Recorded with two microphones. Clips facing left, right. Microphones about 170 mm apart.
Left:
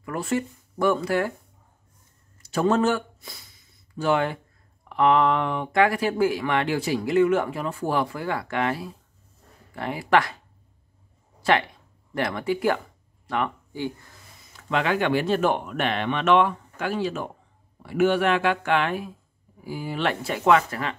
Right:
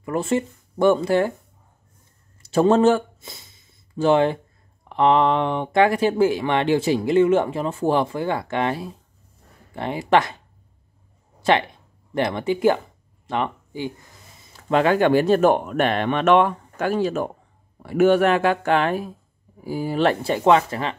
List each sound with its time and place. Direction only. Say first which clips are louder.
0.0 s speech: right 4 dB; 25° right (ahead or behind)
2.4 s speech: right 6 dB; 30° right (ahead or behind)
12.1 s speech: right 3 dB; 20° right (ahead or behind)
14.5 s speech: right 6 dB; 40° right (ahead or behind)